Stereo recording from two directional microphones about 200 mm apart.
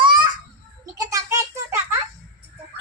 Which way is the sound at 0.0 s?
25° right (ahead or behind).